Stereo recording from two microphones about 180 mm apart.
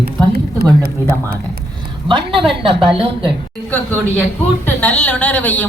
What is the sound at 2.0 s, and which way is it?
Speech, 30° right (ahead or behind).